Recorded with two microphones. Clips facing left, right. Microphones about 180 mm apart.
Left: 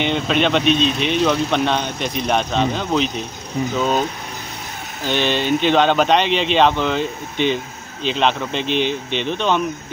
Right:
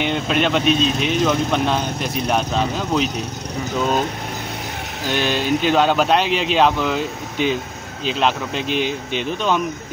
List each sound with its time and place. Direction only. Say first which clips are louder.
0.0 s speech: left 1 dB; 5° right (ahead or behind)
5.0 s speech: left 1 dB; 5° right (ahead or behind)